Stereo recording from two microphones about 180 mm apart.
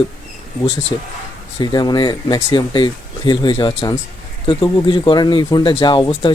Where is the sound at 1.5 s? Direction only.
25° left (ahead or behind).